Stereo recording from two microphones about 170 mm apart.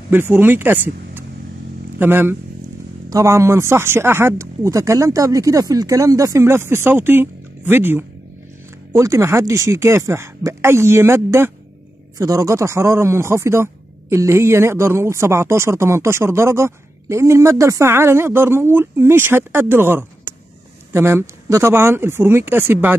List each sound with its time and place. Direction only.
0.1 s speech: 10° right (ahead or behind)